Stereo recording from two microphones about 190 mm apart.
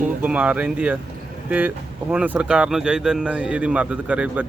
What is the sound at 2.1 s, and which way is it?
Speech, 5° right (ahead or behind).